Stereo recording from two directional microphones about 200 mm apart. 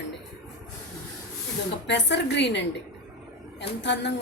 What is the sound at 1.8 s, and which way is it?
Speech, 60° left (ahead or behind).